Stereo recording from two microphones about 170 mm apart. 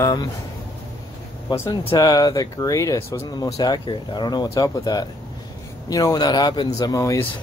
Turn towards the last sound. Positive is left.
turn(degrees=20)  # may be behind; listen again after turning